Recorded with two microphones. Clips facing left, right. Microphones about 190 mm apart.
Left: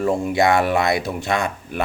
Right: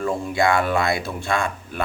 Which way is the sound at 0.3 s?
20° left (ahead or behind).